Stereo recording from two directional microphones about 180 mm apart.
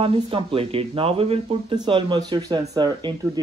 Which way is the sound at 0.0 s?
30° right (ahead or behind).